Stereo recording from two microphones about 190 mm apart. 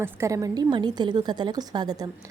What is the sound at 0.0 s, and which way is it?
A woman's voice, 15° right (ahead or behind).